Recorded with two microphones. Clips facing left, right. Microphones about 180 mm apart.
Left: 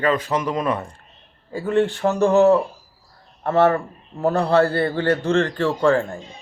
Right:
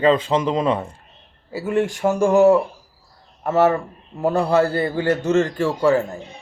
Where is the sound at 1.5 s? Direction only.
10° right (ahead or behind).